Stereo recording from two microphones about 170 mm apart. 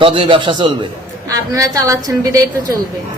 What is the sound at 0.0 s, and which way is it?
Speech, 30° right (ahead or behind).